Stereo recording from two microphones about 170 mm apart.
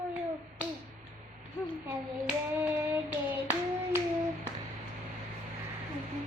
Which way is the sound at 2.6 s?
10° right (ahead or behind).